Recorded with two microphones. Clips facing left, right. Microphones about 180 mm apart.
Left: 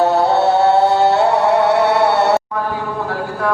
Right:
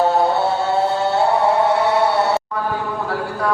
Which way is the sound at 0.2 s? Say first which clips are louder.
Left 4 dB; 70° left (ahead or behind).